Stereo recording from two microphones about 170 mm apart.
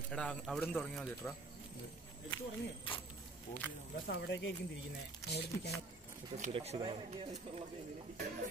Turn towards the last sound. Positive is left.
turn(degrees=-35)  # may be behind; listen again after turning